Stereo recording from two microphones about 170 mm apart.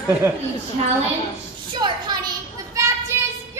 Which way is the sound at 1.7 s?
25° right (ahead or behind).